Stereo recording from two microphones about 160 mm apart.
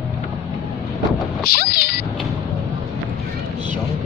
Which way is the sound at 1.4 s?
75° left (ahead or behind).